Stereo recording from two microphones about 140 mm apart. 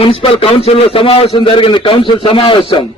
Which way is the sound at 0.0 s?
40° left (ahead or behind).